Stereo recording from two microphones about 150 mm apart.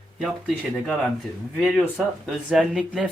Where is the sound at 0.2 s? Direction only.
5° right (ahead or behind).